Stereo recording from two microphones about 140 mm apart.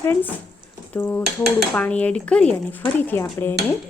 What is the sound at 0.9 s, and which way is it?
Speech, 15° left (ahead or behind).